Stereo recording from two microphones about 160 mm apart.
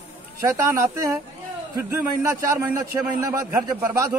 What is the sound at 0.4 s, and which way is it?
A man's voice, 15° right (ahead or behind).